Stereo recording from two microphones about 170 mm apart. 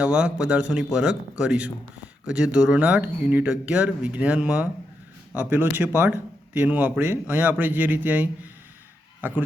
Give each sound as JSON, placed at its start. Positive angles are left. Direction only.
{"t": 0.0, "sound": "speech", "side_deg": -5}